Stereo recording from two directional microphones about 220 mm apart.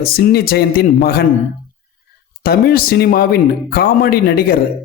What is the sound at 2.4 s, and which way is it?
Speech, 45° left (ahead or behind).